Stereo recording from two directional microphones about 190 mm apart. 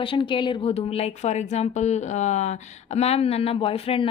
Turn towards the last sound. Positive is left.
turn(degrees=30)  # may be behind; listen again after turning